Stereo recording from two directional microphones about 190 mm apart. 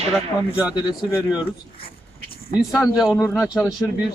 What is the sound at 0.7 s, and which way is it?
Speech, 20° left (ahead or behind).